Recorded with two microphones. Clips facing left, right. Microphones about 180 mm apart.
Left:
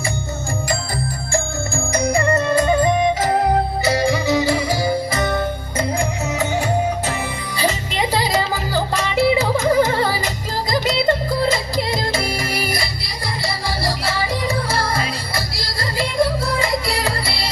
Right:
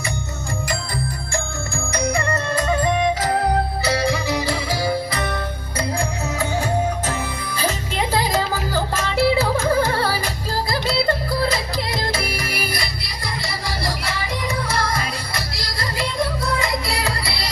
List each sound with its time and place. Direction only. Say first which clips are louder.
1.3 s music: left 4 dB; 30° left (ahead or behind)
16.6 s music: left 3 dB; 30° left (ahead or behind)